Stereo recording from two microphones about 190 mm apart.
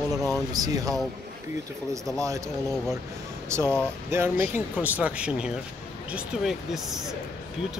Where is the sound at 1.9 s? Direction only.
15° right (ahead or behind).